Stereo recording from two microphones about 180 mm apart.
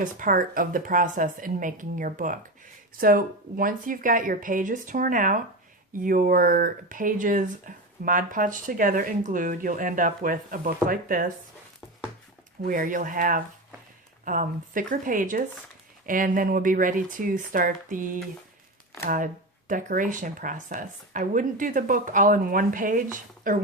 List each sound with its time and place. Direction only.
0.0 s speech: 50° right (ahead or behind)
12.6 s speech: 50° right (ahead or behind)